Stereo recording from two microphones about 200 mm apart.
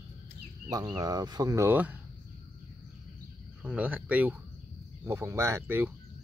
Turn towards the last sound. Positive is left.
turn(degrees=-10)  # may be behind; listen again after turning